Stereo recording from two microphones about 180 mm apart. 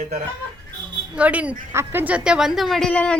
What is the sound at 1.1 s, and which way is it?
A woman's voice, 5° right (ahead or behind).